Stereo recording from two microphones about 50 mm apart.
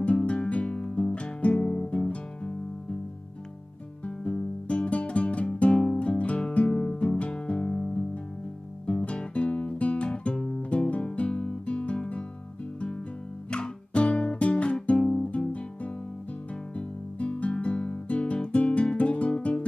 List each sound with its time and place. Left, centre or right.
0.0 s music: left
4.0 s music: left
8.8 s guitar: left
13.5 s music: left
16.7 s guitar: left